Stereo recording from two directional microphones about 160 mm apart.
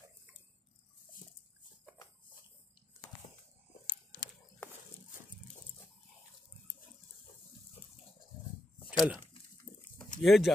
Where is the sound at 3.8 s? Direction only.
65° left (ahead or behind).